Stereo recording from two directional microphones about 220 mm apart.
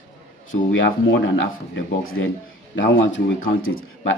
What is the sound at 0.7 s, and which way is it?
Speech, 60° left (ahead or behind).